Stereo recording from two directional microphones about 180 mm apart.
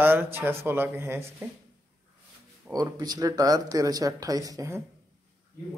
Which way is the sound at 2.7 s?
20° right (ahead or behind).